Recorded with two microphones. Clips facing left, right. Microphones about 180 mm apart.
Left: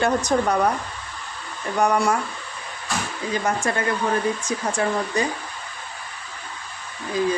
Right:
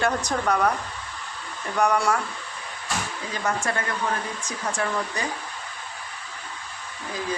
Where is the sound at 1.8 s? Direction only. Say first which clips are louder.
Left 2 dB; 20° left (ahead or behind).